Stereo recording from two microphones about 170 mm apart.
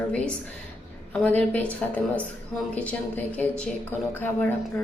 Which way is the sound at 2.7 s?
10° left (ahead or behind).